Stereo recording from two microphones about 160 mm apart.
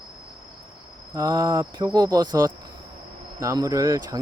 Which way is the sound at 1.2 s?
20° right (ahead or behind).